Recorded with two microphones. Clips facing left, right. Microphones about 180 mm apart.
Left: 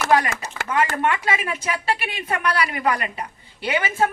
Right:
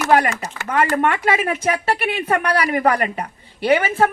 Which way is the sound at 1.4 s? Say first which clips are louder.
Right 7 dB; 40° right (ahead or behind).